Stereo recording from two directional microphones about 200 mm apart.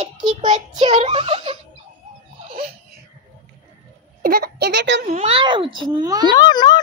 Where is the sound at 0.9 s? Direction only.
30° right (ahead or behind).